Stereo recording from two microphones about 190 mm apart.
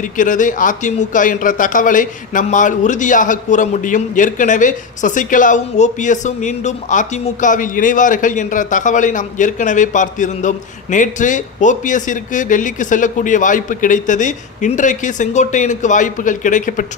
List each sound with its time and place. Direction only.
0.2 s speech: 45° left (ahead or behind)